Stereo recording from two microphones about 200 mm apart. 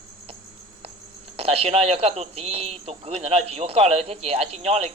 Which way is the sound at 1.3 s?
30° right (ahead or behind).